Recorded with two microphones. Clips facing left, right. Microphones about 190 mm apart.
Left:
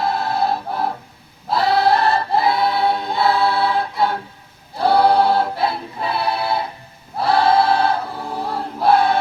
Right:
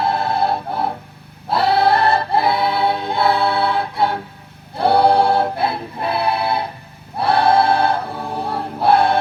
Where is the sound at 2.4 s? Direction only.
60° right (ahead or behind).